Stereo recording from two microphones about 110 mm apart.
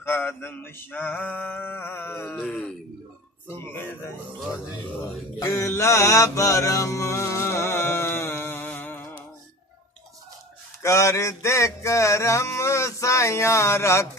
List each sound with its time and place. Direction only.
0.0 s male singing: 20° left (ahead or behind)
2.3 s speech: 15° left (ahead or behind)
5.0 s mantra: 25° left (ahead or behind)
10.8 s music: 25° left (ahead or behind)